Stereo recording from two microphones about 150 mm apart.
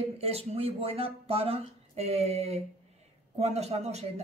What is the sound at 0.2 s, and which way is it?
Speech, 40° right (ahead or behind).